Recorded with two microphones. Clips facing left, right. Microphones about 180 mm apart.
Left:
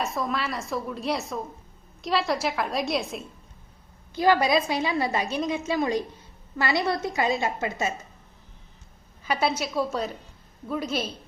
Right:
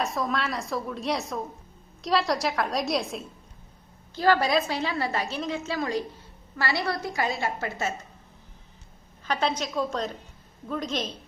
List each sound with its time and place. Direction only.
0.0 s a woman's voice: centre (ahead or behind)
4.1 s a woman's voice: 15° left (ahead or behind)
9.2 s a woman's voice: 10° left (ahead or behind)